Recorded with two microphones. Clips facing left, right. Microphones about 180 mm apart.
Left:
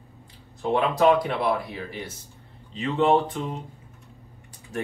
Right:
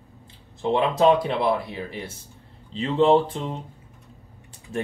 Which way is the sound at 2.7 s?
30° right (ahead or behind).